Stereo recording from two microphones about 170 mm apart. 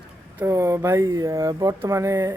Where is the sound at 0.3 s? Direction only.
15° right (ahead or behind).